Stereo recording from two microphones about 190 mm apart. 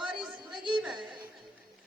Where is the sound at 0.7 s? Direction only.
5° right (ahead or behind).